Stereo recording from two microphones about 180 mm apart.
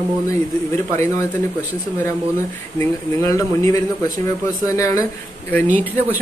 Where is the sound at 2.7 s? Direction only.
15° left (ahead or behind).